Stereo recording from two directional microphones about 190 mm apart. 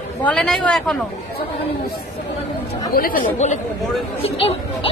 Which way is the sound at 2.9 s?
45° left (ahead or behind).